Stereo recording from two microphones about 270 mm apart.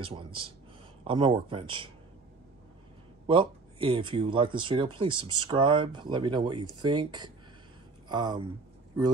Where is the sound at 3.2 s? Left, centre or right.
Centre.